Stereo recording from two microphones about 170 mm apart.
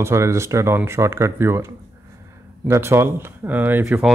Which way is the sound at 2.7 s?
15° right (ahead or behind).